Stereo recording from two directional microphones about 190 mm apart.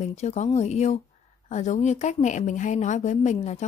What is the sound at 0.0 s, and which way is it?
A woman's voice, 35° left (ahead or behind).